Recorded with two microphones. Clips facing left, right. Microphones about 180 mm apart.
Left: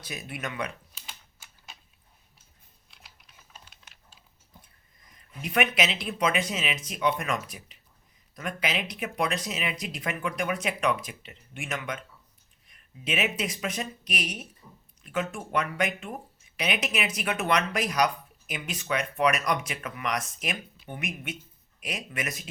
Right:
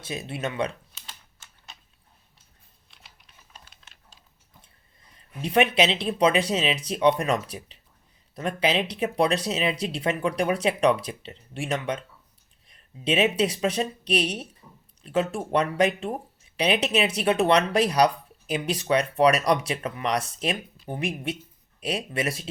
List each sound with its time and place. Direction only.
0.0 s speech: 25° right (ahead or behind)
1.0 s typing: 10° left (ahead or behind)
2.9 s typing: centre (ahead or behind)
5.1 s speech: 30° right (ahead or behind)